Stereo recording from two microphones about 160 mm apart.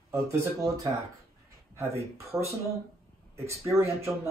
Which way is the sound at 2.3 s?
15° right (ahead or behind).